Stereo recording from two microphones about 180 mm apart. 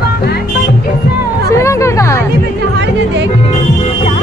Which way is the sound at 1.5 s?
15° left (ahead or behind).